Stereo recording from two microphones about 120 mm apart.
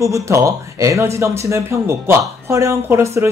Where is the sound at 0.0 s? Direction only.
25° right (ahead or behind).